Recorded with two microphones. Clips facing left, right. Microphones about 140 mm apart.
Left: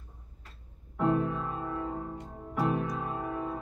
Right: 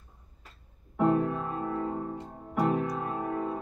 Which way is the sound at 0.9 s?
5° right (ahead or behind).